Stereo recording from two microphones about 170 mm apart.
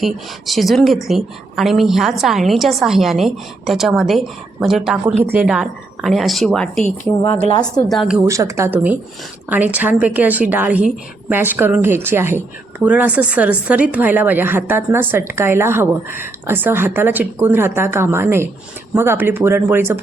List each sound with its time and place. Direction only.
0.0 s a woman's voice: centre (ahead or behind)
7.9 s a woman's voice: centre (ahead or behind)
8.3 s a woman's voice: 20° right (ahead or behind)